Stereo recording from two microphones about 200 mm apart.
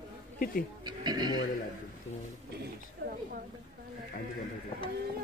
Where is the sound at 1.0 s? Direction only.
20° right (ahead or behind).